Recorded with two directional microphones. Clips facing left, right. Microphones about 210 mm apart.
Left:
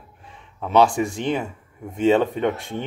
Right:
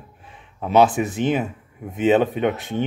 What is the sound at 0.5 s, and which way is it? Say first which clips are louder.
Speech: right 1 dB; 5° right (ahead or behind).